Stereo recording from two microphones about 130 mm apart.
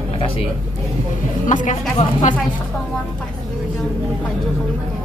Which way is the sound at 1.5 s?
70° left (ahead or behind).